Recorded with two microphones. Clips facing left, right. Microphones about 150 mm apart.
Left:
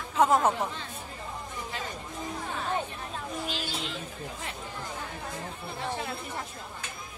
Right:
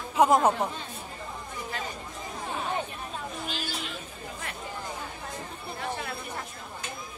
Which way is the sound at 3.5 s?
25° left (ahead or behind).